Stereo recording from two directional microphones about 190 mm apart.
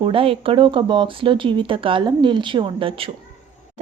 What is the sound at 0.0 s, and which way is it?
A woman's voice, 30° right (ahead or behind).